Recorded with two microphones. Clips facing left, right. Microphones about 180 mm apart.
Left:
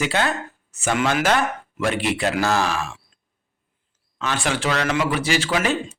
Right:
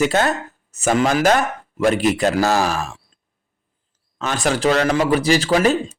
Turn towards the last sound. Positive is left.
turn(degrees=-40)  # may be behind; listen again after turning